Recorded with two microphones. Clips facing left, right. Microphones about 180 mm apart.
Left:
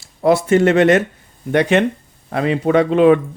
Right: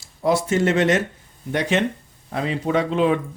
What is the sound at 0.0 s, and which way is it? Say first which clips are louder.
Speech: left 6 dB; 60° left (ahead or behind).